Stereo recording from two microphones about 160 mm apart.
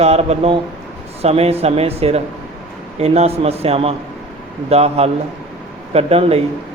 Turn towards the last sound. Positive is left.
turn(degrees=-40)  # may be behind; listen again after turning